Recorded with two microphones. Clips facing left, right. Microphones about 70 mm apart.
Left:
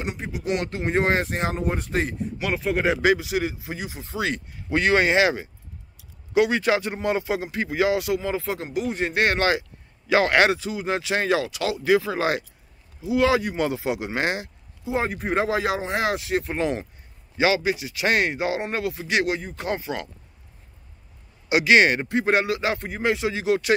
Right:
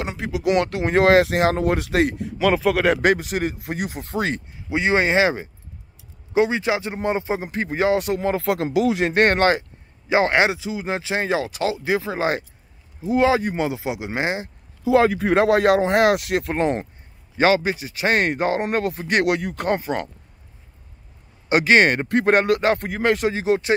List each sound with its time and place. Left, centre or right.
0.0 s speech: right
4.6 s speech: centre; by 9.1 s right
9.1 s speech: right
10.1 s a man's voice: right
13.6 s speech: centre
14.9 s speech: right
16.5 s a man's voice: right
18.3 s speech: right
21.5 s speech: right
22.8 s speech: right
23.3 s a man's voice: right